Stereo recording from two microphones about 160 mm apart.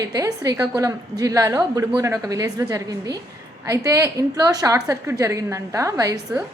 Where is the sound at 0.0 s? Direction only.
20° right (ahead or behind).